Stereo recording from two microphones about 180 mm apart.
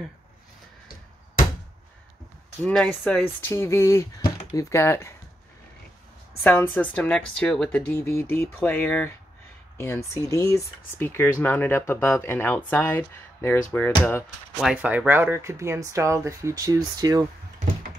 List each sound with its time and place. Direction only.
2.7 s speech: 5° left (ahead or behind)
6.4 s speech: 10° left (ahead or behind)
14.6 s speech: 5° right (ahead or behind); by 17.3 s 20° right (ahead or behind)